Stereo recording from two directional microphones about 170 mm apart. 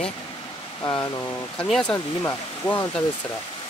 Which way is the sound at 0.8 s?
25° left (ahead or behind).